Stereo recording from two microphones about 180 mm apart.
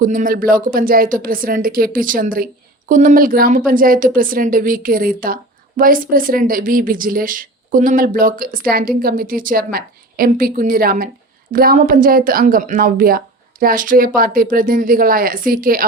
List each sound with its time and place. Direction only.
0.0 s speech: 50° right (ahead or behind)